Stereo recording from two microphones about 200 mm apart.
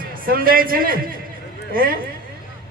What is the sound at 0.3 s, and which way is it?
Speech, 45° right (ahead or behind).